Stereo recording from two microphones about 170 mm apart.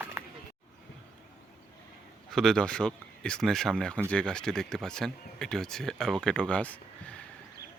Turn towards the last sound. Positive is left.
turn(degrees=10)  # may be behind; listen again after turning